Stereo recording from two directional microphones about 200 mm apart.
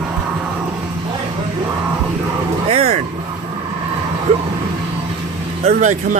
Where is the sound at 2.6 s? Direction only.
30° right (ahead or behind).